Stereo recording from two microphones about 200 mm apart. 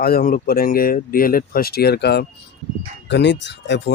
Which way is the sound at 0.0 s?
50° left (ahead or behind).